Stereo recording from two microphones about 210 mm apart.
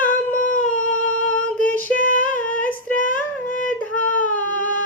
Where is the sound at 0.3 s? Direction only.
40° left (ahead or behind).